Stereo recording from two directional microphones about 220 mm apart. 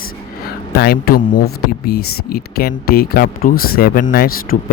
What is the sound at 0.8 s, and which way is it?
Speech, 45° left (ahead or behind).